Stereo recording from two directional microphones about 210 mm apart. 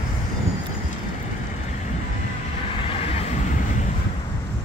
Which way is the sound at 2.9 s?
30° left (ahead or behind).